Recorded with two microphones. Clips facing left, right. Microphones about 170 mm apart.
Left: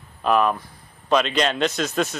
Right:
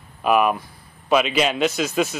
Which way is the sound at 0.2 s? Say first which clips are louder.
Right 1 dB; 10° right (ahead or behind).